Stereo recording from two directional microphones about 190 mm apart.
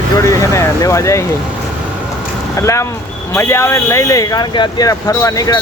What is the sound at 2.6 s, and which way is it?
Speech, 15° left (ahead or behind).